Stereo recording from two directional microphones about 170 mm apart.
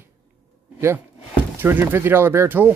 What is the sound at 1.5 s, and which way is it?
Speech, 10° right (ahead or behind).